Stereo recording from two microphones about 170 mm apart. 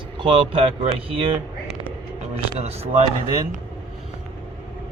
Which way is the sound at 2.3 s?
35° right (ahead or behind).